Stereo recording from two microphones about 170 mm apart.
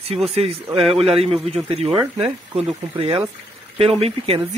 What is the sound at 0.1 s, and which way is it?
A man's voice, 35° right (ahead or behind).